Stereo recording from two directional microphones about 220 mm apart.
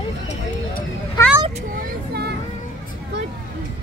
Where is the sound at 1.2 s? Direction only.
15° left (ahead or behind).